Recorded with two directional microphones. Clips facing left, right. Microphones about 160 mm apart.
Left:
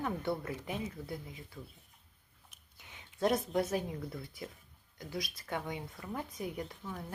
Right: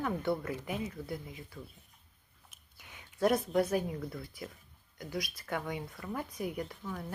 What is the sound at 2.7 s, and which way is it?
Speech, 25° left (ahead or behind).